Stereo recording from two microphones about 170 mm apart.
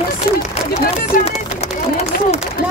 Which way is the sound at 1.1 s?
55° left (ahead or behind).